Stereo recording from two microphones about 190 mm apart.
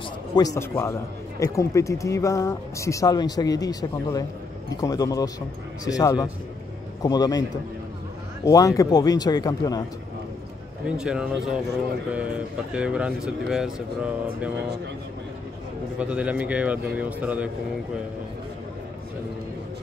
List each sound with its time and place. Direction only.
0.4 s speech: 15° left (ahead or behind)
8.5 s speech: 15° left (ahead or behind)
10.9 s speech: 5° right (ahead or behind)
16.0 s speech: 5° right (ahead or behind)